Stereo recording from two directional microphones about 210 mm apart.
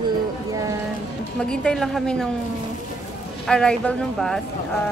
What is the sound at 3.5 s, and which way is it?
Speech, 5° left (ahead or behind).